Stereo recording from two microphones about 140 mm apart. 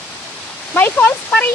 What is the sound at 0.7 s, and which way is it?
Speech, 15° left (ahead or behind).